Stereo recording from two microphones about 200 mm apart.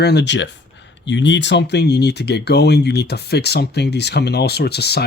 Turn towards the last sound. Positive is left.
turn(degrees=55)  # may be behind; listen again after turning